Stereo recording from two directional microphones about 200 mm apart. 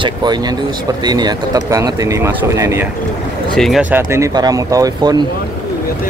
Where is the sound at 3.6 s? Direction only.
Centre (ahead or behind).